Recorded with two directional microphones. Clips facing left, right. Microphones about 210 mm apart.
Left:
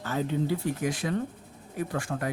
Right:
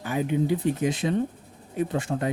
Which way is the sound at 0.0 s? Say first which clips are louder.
Right 3 dB; 15° right (ahead or behind).